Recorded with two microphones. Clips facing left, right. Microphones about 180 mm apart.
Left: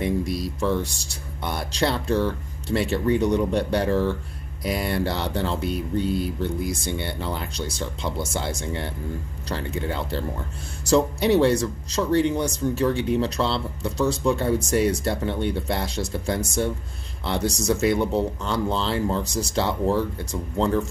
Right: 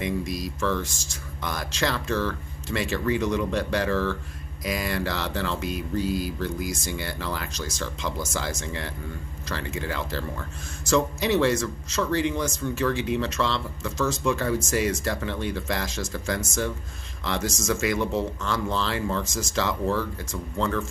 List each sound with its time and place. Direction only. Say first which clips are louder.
0.0 s speech: left 4 dB; 30° left (ahead or behind)